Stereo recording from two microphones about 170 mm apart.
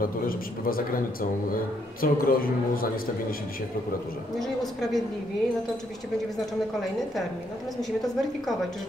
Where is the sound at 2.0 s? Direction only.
60° left (ahead or behind).